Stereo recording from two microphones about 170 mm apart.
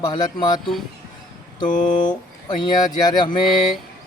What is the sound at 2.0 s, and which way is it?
Speech, 25° left (ahead or behind).